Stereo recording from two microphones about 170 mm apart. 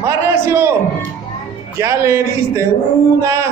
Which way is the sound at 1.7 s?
15° right (ahead or behind).